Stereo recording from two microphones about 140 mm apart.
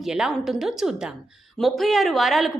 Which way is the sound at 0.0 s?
5° right (ahead or behind).